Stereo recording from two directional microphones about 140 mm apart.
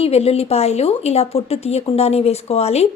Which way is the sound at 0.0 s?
45° left (ahead or behind).